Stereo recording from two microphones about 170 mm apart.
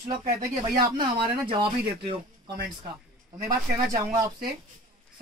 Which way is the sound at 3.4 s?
20° right (ahead or behind).